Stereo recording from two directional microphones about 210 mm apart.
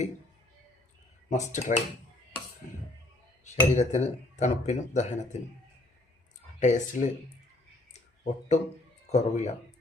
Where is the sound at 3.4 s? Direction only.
35° left (ahead or behind).